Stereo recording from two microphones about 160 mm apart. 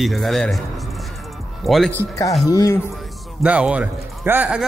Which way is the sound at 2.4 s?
20° left (ahead or behind).